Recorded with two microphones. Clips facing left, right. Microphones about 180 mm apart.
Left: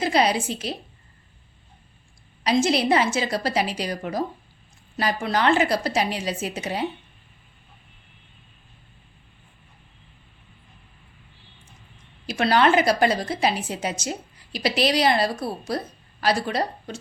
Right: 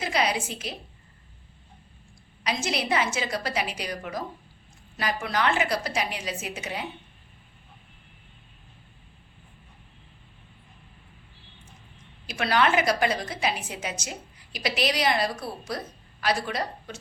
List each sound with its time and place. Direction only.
0.0 s a woman's voice: 30° left (ahead or behind)
2.4 s a woman's voice: 30° left (ahead or behind)
12.3 s a woman's voice: 30° left (ahead or behind)